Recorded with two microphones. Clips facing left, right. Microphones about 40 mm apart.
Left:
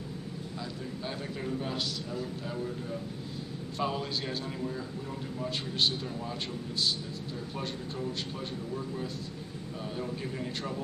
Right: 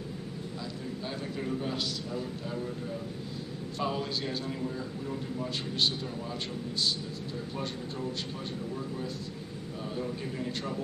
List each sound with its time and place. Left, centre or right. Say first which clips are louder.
1.4 s a man's voice: right 1 dB; centre
3.7 s a man's voice: even; centre
9.9 s a man's voice: right 1 dB; centre